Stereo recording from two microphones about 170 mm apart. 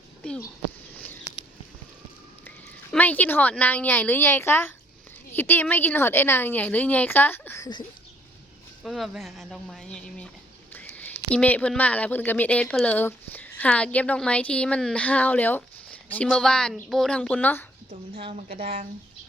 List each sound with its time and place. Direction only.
2.9 s speech: 10° left (ahead or behind)
8.8 s speech: centre (ahead or behind)
18.6 s speech: 35° right (ahead or behind)